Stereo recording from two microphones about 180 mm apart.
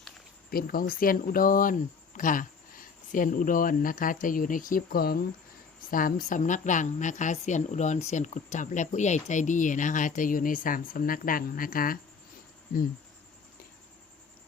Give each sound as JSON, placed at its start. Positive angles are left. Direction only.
{"t": 0.5, "sound": "a woman's voice", "side_deg": 55}